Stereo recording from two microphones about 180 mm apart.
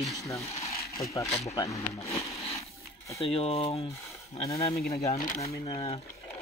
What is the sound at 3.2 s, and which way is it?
Speech, 35° left (ahead or behind).